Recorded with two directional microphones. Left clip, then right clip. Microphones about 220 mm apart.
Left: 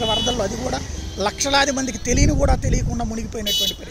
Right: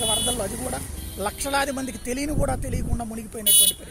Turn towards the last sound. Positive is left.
turn(degrees=-50)  # may be behind; listen again after turning